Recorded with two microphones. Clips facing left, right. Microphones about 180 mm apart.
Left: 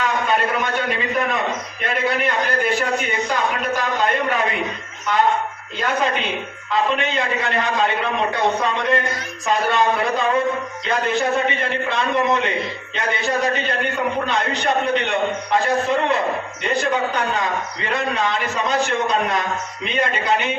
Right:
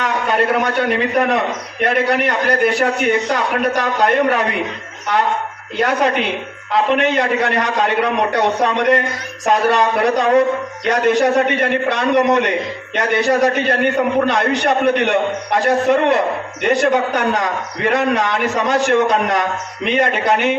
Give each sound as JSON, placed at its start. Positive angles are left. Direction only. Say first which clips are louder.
{"t": 0.0, "sound": "a sound", "louder": "right 3 dB", "side_deg": -60}
{"t": 0.8, "sound": "a man's voice", "louder": "right 6 dB", "side_deg": -55}
{"t": 5.7, "sound": "a man's voice", "louder": "right 5 dB", "side_deg": -70}